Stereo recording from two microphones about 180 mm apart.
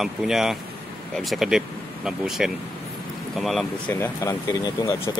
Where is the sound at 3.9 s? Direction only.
15° left (ahead or behind).